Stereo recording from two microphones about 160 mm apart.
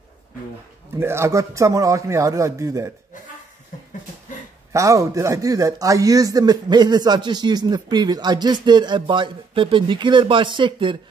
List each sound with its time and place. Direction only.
0.9 s speech: 15° right (ahead or behind)
3.7 s a sound: 55° left (ahead or behind)
4.7 s speech: 20° right (ahead or behind)